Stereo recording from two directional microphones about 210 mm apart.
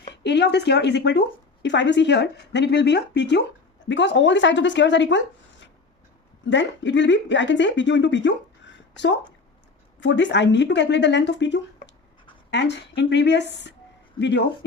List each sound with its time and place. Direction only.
0.1 s speech: 55° left (ahead or behind)
6.4 s speech: 60° left (ahead or behind)
10.0 s speech: 60° left (ahead or behind)